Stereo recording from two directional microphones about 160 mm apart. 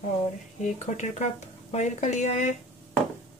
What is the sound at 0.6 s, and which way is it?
Speech, 50° left (ahead or behind).